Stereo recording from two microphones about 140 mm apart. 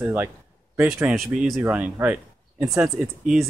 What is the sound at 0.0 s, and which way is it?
Speech, 10° right (ahead or behind).